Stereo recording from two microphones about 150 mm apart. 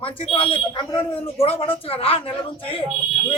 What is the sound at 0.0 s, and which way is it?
A man's voice, 35° left (ahead or behind).